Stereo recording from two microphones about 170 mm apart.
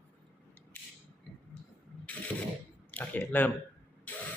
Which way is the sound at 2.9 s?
10° left (ahead or behind).